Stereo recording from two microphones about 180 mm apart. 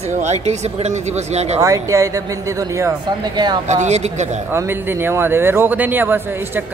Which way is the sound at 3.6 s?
40° right (ahead or behind).